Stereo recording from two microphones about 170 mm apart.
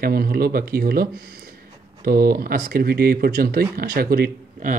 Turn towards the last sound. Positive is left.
turn(degrees=-55)  # may be behind; listen again after turning